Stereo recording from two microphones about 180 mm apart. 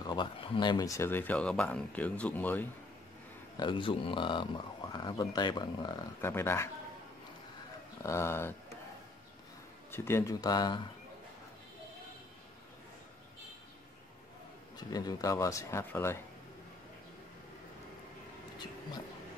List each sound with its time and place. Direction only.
0.0 s speech: 25° left (ahead or behind); by 2.7 s 10° left (ahead or behind)
3.5 s speech: 25° left (ahead or behind)
6.2 s speech: 15° left (ahead or behind)
8.0 s speech: 15° left (ahead or behind)
9.8 s speech: 15° left (ahead or behind)
14.8 s speech: 20° left (ahead or behind)
18.6 s a sound: 25° left (ahead or behind)